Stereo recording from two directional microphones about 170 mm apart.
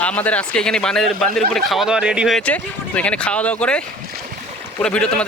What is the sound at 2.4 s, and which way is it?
Speech, 10° left (ahead or behind).